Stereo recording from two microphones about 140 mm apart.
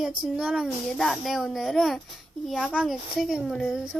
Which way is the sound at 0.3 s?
5° right (ahead or behind).